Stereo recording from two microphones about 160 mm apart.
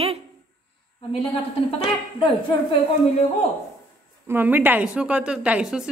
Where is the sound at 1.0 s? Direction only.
35° left (ahead or behind).